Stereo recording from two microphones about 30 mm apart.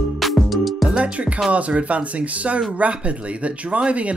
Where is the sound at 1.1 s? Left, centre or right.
Right.